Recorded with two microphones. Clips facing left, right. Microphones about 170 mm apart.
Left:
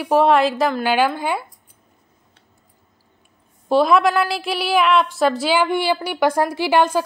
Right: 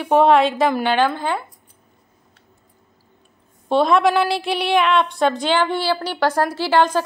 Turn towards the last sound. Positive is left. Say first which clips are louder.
# even
turn(degrees=10)  # may be behind; listen again after turning